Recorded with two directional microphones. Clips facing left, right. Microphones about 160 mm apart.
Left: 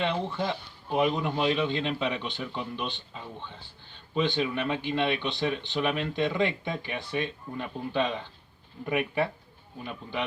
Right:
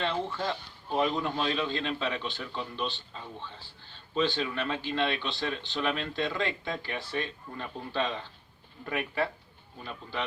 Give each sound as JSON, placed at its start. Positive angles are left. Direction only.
{"t": 0.0, "sound": "speech", "side_deg": 20}